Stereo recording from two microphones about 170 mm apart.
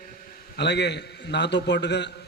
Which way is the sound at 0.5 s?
85° left.